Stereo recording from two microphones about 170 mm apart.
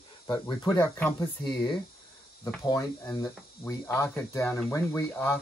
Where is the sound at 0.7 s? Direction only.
10° left (ahead or behind).